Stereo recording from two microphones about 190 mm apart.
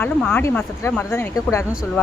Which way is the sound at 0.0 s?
5° left (ahead or behind).